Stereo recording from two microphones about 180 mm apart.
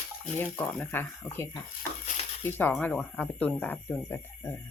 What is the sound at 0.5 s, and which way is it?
Speech, 10° left (ahead or behind).